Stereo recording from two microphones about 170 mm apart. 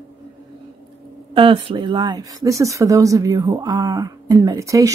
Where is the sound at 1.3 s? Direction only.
30° right (ahead or behind).